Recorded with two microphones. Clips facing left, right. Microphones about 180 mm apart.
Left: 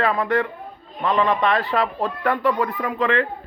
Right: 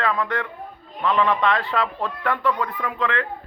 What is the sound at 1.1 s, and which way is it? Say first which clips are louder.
Speech: left 1 dB; 35° left (ahead or behind).